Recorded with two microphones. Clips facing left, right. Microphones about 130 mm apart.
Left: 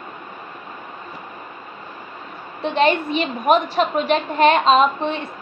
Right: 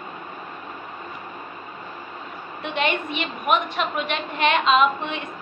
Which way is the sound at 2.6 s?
35° left (ahead or behind).